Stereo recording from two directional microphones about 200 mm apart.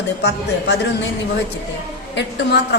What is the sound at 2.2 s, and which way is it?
Speech, 60° left (ahead or behind).